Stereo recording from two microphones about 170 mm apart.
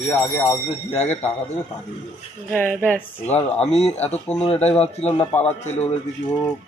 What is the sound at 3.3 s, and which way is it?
Speech, 40° left (ahead or behind).